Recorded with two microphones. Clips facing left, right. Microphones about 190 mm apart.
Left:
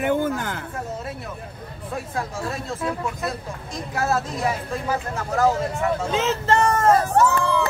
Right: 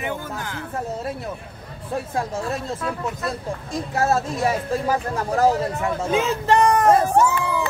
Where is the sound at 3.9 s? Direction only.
25° right (ahead or behind).